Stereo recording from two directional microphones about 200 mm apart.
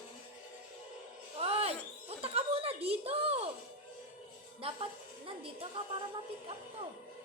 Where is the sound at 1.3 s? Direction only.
30° right (ahead or behind).